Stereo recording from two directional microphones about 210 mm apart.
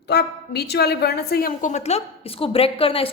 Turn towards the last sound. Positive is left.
turn(degrees=25)  # may be behind; listen again after turning